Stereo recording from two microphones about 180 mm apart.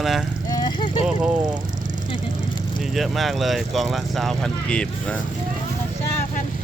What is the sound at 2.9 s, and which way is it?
Speech, centre (ahead or behind).